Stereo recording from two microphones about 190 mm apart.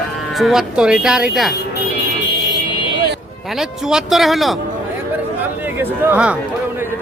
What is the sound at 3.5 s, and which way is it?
Speech, centre (ahead or behind).